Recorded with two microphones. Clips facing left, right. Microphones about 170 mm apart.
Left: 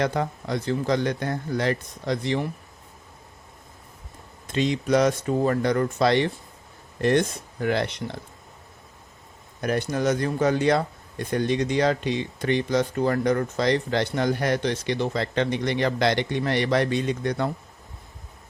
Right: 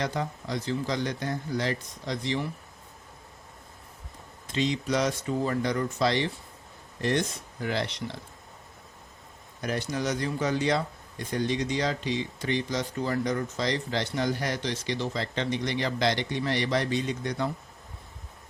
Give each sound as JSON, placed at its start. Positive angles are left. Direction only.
{"t": 0.0, "sound": "speech", "side_deg": 60}
{"t": 4.4, "sound": "speech", "side_deg": 55}
{"t": 9.6, "sound": "speech", "side_deg": 55}